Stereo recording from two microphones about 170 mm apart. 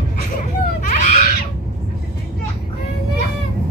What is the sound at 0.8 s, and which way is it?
Screaming, 45° left (ahead or behind).